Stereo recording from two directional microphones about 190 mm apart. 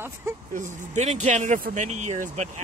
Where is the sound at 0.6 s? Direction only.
40° right (ahead or behind).